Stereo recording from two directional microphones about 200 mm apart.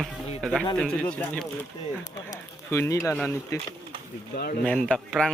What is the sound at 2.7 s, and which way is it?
Speech, 15° left (ahead or behind).